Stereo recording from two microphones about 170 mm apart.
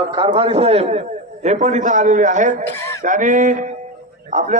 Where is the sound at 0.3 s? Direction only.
35° right (ahead or behind).